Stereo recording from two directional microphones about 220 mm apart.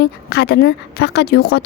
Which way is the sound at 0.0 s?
45° left (ahead or behind).